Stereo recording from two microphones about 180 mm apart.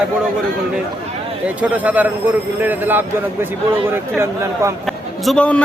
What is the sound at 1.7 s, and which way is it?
Speech, 10° right (ahead or behind).